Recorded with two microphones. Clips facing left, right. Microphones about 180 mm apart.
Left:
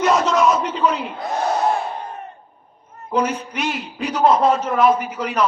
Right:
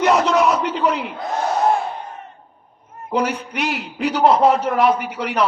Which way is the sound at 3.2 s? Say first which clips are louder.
Even; 70° right (ahead or behind).